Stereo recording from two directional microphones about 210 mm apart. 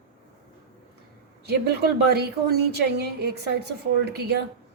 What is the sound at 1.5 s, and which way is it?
A woman's voice, 50° right (ahead or behind).